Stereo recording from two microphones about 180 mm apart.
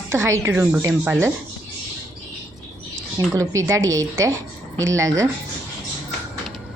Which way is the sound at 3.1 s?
20° right (ahead or behind).